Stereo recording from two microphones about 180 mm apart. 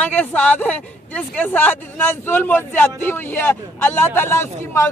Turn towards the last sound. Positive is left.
turn(degrees=15)  # may be behind; listen again after turning